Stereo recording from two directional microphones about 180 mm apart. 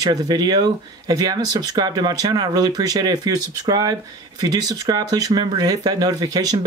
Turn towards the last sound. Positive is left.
turn(degrees=-20)  # may be behind; listen again after turning